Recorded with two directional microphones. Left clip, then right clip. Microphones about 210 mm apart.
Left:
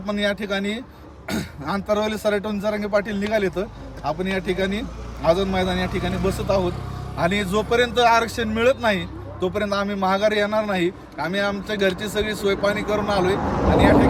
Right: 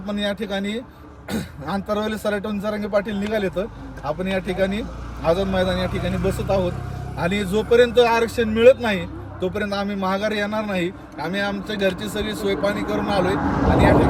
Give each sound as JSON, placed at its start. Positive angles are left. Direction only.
{"t": 0.0, "sound": "speech", "side_deg": 0}
{"t": 13.5, "sound": "speech", "side_deg": 40}